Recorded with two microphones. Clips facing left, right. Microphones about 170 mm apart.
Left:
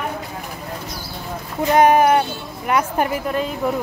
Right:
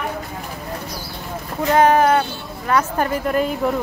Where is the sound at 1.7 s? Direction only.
15° left (ahead or behind).